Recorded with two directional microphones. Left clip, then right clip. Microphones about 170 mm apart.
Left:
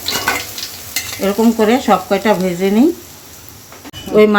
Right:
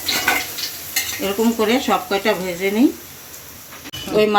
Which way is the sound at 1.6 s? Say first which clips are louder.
Left 5 dB; 45° left (ahead or behind).